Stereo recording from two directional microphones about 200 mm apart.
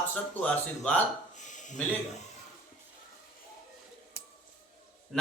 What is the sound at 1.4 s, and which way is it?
Speech, 40° left (ahead or behind).